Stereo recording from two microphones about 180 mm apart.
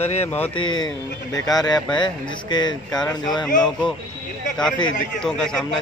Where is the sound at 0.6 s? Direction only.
25° left (ahead or behind).